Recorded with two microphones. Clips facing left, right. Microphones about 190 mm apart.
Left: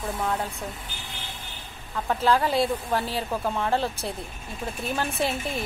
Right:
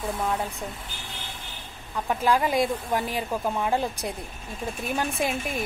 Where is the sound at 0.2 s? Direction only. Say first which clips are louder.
Left 1 dB; 10° right (ahead or behind).